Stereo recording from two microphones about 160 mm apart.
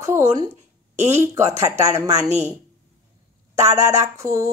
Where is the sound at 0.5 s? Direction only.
45° right (ahead or behind).